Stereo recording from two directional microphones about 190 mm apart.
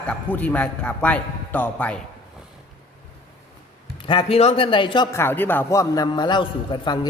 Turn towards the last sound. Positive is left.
turn(degrees=25)  # may be behind; listen again after turning